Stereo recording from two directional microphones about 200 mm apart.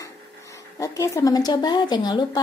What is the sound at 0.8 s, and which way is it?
Speech, 15° left (ahead or behind).